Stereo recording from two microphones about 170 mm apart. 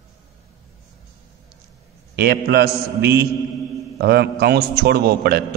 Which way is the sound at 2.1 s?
70° right (ahead or behind).